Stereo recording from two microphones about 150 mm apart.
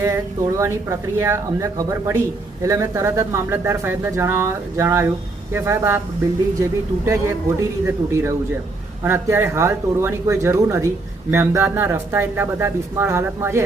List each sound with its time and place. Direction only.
0.6 s speech: 20° right (ahead or behind)